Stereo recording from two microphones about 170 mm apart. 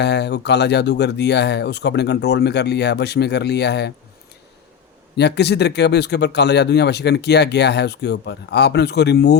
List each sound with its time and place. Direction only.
0.0 s speech: 80° left
5.1 s speech: 80° left